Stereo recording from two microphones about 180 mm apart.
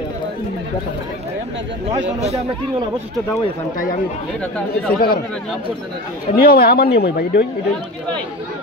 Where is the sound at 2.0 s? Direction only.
40° right (ahead or behind).